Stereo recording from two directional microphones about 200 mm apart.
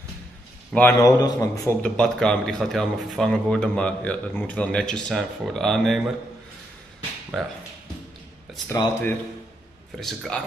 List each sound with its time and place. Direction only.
0.7 s a man's voice: 15° left (ahead or behind)
1.8 s a man's voice: 5° left (ahead or behind)
7.3 s a man's voice: centre (ahead or behind)
8.6 s a man's voice: 10° left (ahead or behind)
9.9 s a man's voice: centre (ahead or behind)